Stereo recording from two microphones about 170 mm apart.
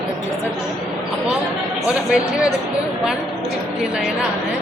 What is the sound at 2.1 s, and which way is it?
Speech, 5° right (ahead or behind).